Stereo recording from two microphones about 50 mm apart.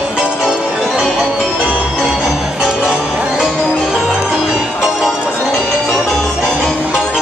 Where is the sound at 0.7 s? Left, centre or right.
Centre.